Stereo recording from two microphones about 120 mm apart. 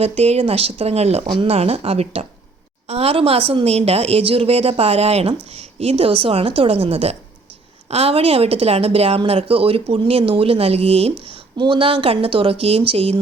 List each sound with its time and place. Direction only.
0.0 s speech: 60° right (ahead or behind)
11.5 s speech: 40° right (ahead or behind)